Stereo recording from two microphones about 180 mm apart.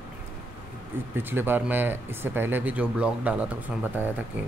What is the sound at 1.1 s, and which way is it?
A man's voice, 10° right (ahead or behind).